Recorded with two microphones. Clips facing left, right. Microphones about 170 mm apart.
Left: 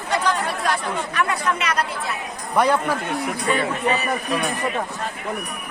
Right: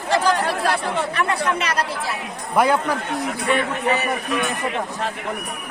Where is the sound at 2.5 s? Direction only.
Centre (ahead or behind).